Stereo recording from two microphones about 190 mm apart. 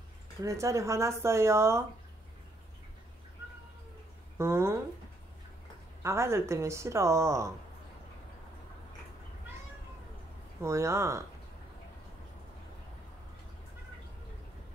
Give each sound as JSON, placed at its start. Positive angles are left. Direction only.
{"t": 0.4, "sound": "a woman's voice", "side_deg": -15}
{"t": 4.4, "sound": "a woman's voice", "side_deg": -15}
{"t": 6.0, "sound": "a woman's voice", "side_deg": -15}
{"t": 10.6, "sound": "a woman's voice", "side_deg": -15}